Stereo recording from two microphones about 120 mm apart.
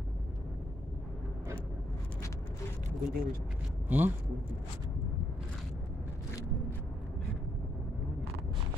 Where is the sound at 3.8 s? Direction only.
15° right (ahead or behind).